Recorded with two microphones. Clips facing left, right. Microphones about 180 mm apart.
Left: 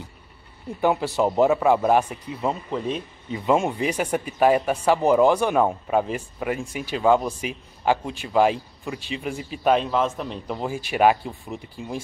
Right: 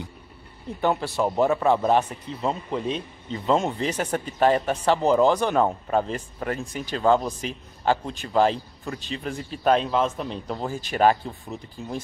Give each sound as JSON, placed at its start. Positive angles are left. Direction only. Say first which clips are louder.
{"t": 0.7, "sound": "speech", "louder": "left 2 dB", "side_deg": 10}